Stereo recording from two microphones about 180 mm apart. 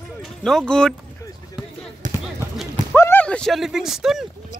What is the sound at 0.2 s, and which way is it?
Speech, centre (ahead or behind).